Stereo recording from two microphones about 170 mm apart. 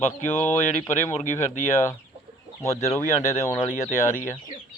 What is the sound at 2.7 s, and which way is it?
Speech, 40° left (ahead or behind).